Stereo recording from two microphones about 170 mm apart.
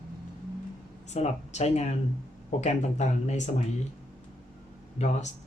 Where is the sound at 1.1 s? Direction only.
40° left (ahead or behind).